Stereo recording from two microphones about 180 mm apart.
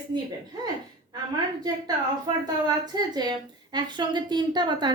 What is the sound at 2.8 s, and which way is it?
A woman's voice, 20° right (ahead or behind).